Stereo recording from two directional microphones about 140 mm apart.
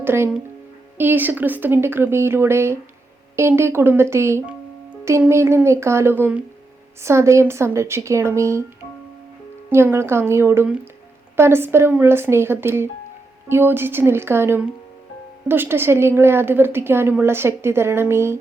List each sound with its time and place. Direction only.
0.0 s a woman's voice: 15° right (ahead or behind)
9.6 s a woman's voice: 15° right (ahead or behind)